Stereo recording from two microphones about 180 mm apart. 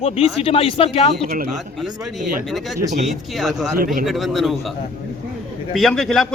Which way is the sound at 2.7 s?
40° right (ahead or behind).